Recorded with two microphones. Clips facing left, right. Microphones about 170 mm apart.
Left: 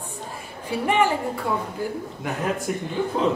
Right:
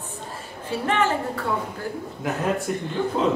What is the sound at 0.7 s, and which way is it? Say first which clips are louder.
Speech: left 2 dB; 15° left (ahead or behind).